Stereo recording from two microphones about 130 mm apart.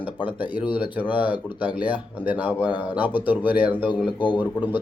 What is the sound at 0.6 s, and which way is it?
Speech, 40° left (ahead or behind).